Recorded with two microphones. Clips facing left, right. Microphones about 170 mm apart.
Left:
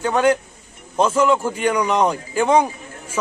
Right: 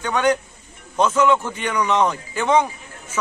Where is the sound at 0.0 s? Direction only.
30° left (ahead or behind).